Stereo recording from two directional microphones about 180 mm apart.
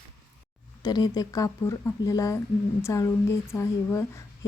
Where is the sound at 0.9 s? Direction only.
20° left (ahead or behind).